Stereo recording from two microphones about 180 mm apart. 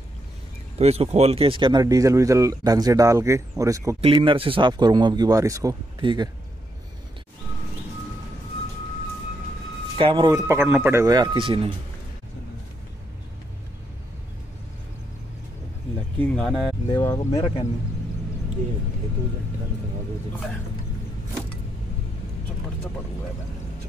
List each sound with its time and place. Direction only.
0.7 s speech: 35° right (ahead or behind); by 3.9 s 20° right (ahead or behind)
4.0 s speech: 30° right (ahead or behind)
9.9 s speech: 25° right (ahead or behind)
16.2 s speech: 5° left (ahead or behind)
16.8 s speech: 15° left (ahead or behind)